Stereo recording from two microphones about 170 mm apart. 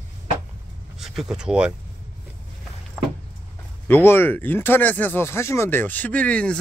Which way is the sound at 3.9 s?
10° left (ahead or behind).